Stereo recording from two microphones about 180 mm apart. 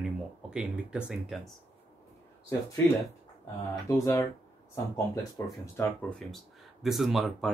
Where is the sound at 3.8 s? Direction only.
15° left (ahead or behind).